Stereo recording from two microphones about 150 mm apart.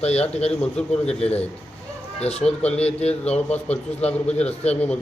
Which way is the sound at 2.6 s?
10° left (ahead or behind).